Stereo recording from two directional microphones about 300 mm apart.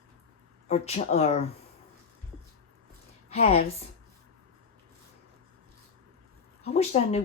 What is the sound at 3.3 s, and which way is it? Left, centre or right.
Speech, left.